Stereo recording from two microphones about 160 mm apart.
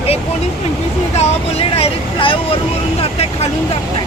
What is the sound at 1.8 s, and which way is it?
Speech, 35° left (ahead or behind).